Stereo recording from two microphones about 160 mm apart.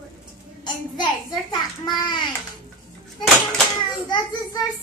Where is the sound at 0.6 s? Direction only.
25° left (ahead or behind).